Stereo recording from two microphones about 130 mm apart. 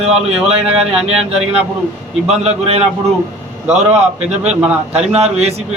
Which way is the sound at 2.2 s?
55° right (ahead or behind).